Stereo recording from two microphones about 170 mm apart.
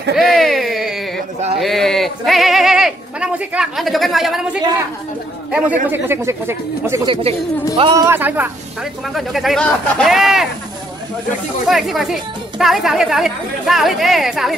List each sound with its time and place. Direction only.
0.1 s a sound: centre (ahead or behind)
1.6 s speech: centre (ahead or behind); by 7.1 s 15° right (ahead or behind)
7.7 s speech: 25° right (ahead or behind)
8.2 s speech: 10° right (ahead or behind)
9.1 s speech: centre (ahead or behind)
11.6 s speech: centre (ahead or behind)